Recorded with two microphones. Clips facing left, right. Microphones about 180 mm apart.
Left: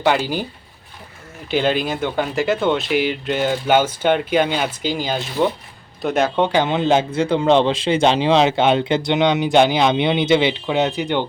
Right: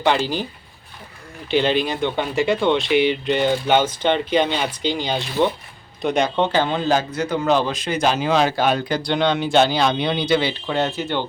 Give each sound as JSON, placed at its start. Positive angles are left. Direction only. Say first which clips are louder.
{"t": 0.0, "sound": "speech", "louder": "left 1 dB", "side_deg": 10}
{"t": 1.5, "sound": "a man's voice", "louder": "even", "side_deg": 5}